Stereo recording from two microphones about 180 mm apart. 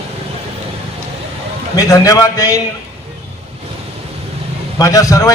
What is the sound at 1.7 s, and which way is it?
Speech, 20° left (ahead or behind).